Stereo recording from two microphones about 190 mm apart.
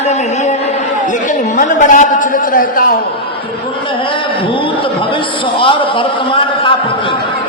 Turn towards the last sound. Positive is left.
turn(degrees=25)  # may be behind; listen again after turning